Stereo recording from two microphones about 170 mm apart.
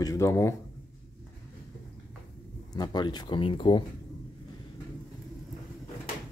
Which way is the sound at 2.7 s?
25° left (ahead or behind).